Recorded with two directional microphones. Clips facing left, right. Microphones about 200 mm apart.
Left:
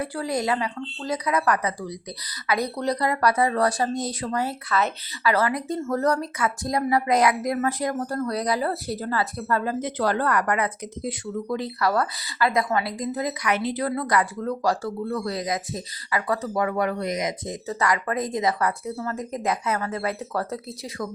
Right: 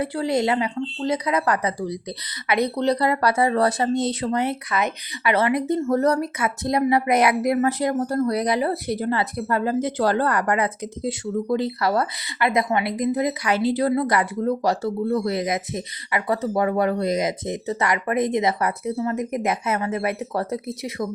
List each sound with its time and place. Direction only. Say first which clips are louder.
0.0 s speech: right 4 dB; 25° right (ahead or behind)